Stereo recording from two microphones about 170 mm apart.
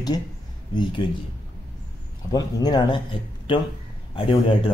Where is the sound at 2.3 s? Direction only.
25° left (ahead or behind).